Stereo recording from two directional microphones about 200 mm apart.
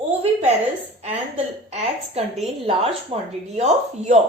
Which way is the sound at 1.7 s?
30° right (ahead or behind).